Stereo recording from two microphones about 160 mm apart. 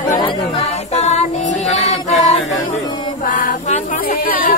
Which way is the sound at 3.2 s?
55° left (ahead or behind).